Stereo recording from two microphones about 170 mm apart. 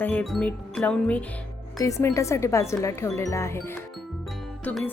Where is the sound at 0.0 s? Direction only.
10° left (ahead or behind).